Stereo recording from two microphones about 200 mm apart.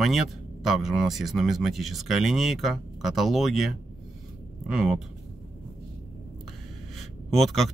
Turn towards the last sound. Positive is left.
turn(degrees=0)  # may be behind; listen again after turning